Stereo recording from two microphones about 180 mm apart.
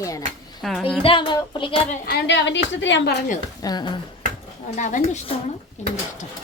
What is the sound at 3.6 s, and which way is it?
Speech, 25° left (ahead or behind).